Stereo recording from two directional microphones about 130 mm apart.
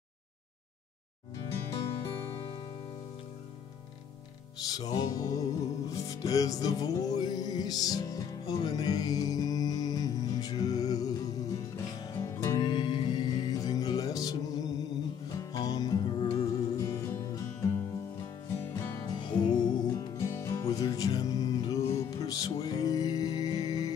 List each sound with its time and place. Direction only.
2.0 s music: 40° left (ahead or behind)
4.7 s music: 30° left (ahead or behind)
12.6 s music: 40° left (ahead or behind)
16.7 s music: 25° left (ahead or behind)
19.1 s music: 35° left (ahead or behind)